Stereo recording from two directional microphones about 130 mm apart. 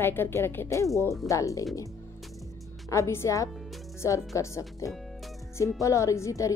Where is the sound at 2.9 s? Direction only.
20° left (ahead or behind).